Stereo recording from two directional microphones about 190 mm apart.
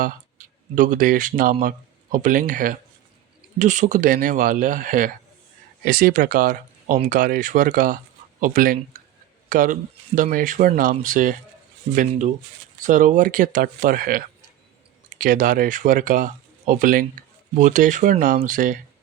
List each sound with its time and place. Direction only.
0.0 s speech: 45° right (ahead or behind)
12.8 s speech: 45° right (ahead or behind)